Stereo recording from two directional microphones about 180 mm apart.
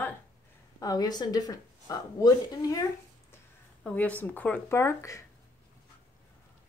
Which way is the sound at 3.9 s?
10° left (ahead or behind).